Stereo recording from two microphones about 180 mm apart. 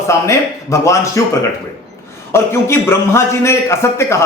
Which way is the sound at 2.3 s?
15° left (ahead or behind).